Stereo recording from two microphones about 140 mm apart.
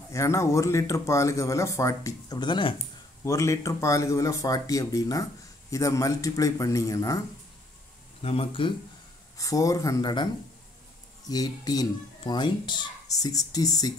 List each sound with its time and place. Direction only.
0.1 s speech: 20° left (ahead or behind)
3.3 s speech: 20° left (ahead or behind)
8.2 s speech: 45° left (ahead or behind)
9.4 s speech: 25° left (ahead or behind)
11.2 s speech: 30° left (ahead or behind)